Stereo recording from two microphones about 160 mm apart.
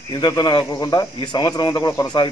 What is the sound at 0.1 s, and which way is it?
Speech, 25° left (ahead or behind).